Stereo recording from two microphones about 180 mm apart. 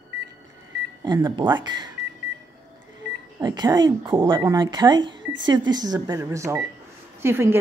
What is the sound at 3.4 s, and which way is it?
Speech, 25° right (ahead or behind).